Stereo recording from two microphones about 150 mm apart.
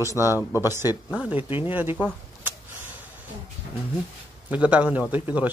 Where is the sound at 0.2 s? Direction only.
15° right (ahead or behind).